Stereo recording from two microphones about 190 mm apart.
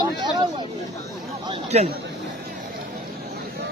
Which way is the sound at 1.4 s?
35° right (ahead or behind).